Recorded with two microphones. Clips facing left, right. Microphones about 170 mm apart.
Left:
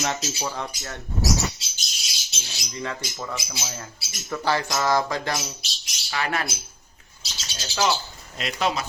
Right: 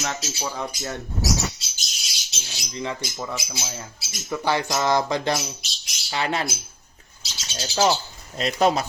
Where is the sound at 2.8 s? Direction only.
15° right (ahead or behind).